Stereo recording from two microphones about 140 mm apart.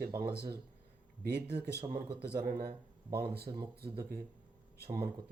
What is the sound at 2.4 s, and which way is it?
Speech, 90° right.